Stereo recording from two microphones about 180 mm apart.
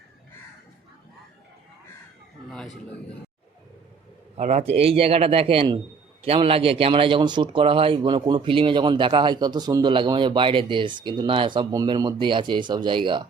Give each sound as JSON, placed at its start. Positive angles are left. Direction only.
{"t": 4.4, "sound": "a man's voice", "side_deg": -40}